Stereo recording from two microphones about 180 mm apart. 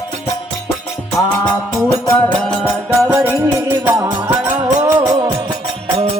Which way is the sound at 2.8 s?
15° right (ahead or behind).